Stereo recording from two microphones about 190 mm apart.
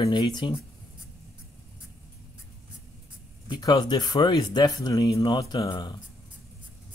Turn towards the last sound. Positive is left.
turn(degrees=20)  # may be behind; listen again after turning